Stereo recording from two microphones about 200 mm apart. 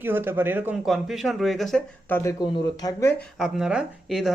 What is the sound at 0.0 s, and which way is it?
Speech, 10° right (ahead or behind).